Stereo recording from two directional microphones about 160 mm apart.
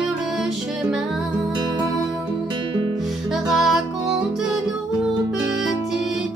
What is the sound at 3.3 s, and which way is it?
Music, centre (ahead or behind).